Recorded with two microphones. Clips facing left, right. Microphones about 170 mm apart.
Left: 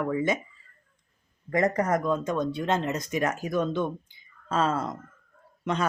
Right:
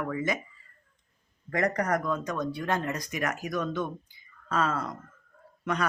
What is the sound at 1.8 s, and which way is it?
Speech, 20° left (ahead or behind).